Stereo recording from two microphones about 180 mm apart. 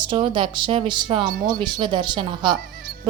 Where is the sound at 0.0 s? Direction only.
25° right (ahead or behind).